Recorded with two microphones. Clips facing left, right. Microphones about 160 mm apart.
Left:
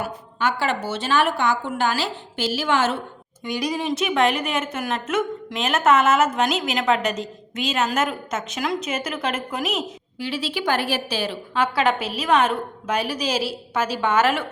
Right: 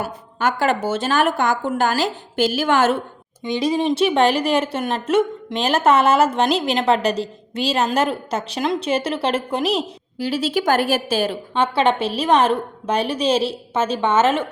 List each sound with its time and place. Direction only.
0.0 s a woman's voice: 45° right (ahead or behind)
3.4 s speech: 25° right (ahead or behind); by 11.3 s 45° right (ahead or behind)
11.5 s a woman's voice: 25° right (ahead or behind)